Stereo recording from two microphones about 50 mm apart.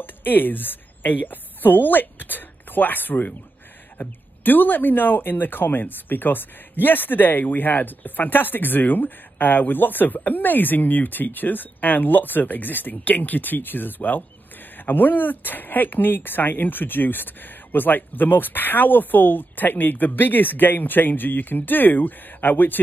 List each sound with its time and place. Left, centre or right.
0.0 s a woman's voice: left